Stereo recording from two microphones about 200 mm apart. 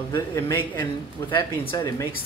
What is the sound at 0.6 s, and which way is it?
Speech, 25° left (ahead or behind).